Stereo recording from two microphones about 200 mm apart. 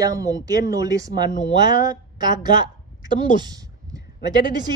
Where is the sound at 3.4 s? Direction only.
20° right (ahead or behind).